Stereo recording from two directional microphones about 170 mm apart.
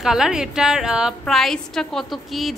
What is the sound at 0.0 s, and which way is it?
A woman's voice, 5° right (ahead or behind).